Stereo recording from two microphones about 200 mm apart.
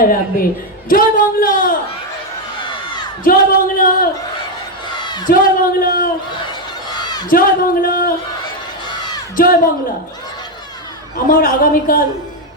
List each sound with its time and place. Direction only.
0.0 s speech: 45° left (ahead or behind)
2.6 s a sound: 25° left (ahead or behind)
3.2 s speech: 45° left (ahead or behind)
5.0 s a sound: 20° left (ahead or behind)
5.3 s speech: 45° left (ahead or behind)
6.9 s crowd: 20° left (ahead or behind)
7.3 s speech: 45° left (ahead or behind)
8.9 s crowd: 20° left (ahead or behind)
9.3 s speech: 45° left (ahead or behind)
11.3 s speech: 45° left (ahead or behind)